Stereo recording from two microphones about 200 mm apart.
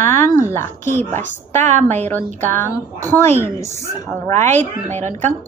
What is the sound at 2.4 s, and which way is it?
A woman's voice, 10° left (ahead or behind).